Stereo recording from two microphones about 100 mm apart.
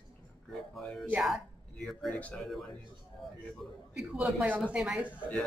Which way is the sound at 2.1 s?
15° left (ahead or behind).